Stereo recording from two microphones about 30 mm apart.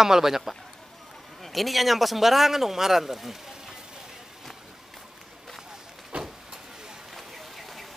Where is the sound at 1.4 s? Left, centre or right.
Centre.